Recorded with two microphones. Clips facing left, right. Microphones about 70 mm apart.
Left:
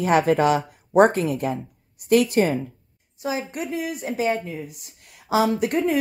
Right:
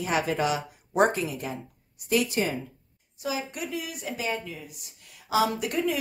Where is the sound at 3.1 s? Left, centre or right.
Left.